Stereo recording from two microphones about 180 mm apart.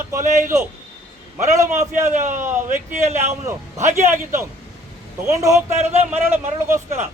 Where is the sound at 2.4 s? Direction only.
15° right (ahead or behind).